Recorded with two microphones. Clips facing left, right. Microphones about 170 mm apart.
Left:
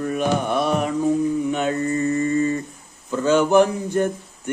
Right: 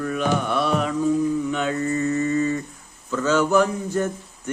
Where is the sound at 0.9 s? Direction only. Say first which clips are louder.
Left 1 dB; 30° left (ahead or behind).